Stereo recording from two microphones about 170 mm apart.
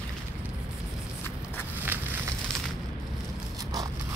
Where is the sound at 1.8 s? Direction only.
10° right (ahead or behind).